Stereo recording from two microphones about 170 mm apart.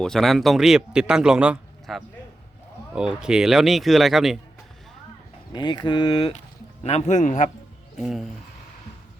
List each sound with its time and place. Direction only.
0.0 s a man's voice: centre (ahead or behind)
5.5 s a man's voice: 25° left (ahead or behind); by 7.5 s 45° left (ahead or behind)
7.9 s a man's voice: centre (ahead or behind)